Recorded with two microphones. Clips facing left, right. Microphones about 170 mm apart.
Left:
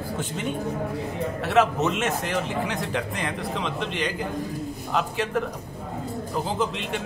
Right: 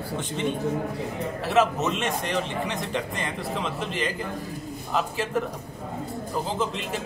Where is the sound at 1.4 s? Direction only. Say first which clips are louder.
Left 1 dB; centre (ahead or behind).